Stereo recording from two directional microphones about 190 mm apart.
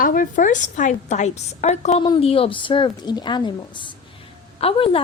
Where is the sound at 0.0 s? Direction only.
45° left (ahead or behind).